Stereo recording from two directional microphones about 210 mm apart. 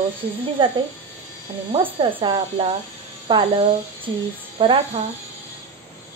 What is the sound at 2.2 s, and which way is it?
Speech, 25° right (ahead or behind).